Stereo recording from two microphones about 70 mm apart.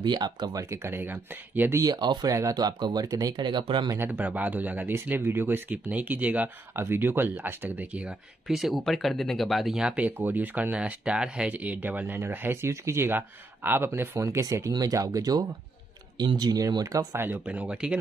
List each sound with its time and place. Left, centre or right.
0.0 s speech: right
0.7 s speech: right
1.9 s speech: right
2.2 s speech: right
4.0 s speech: right
6.7 s speech: right
8.5 s speech: centre
9.9 s speech: right
14.2 s speech: right
14.7 s speech: right
16.2 s speech: right
17.2 s speech: right